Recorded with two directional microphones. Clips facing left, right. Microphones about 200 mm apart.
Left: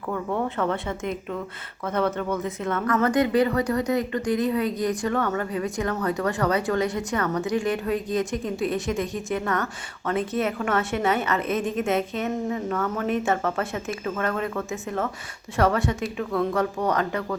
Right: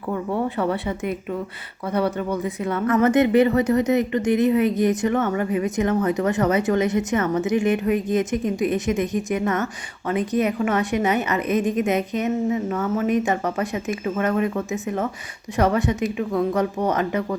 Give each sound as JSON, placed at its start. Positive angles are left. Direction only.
{"t": 0.1, "sound": "speech", "side_deg": -10}